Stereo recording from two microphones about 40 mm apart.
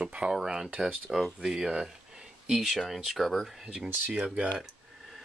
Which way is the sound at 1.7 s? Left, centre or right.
Right.